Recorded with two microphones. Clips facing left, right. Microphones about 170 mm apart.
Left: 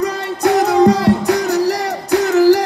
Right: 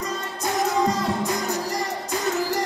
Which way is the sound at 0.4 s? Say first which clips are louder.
Left 11 dB; 70° left (ahead or behind).